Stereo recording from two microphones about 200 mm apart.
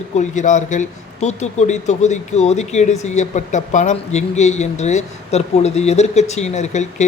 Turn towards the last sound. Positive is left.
turn(degrees=35)  # may be behind; listen again after turning